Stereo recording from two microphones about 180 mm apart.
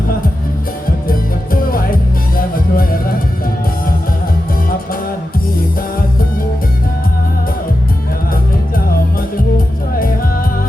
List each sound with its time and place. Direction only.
1.7 s music: 55° left (ahead or behind)